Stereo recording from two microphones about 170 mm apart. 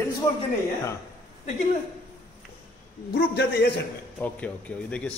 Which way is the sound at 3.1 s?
80° left.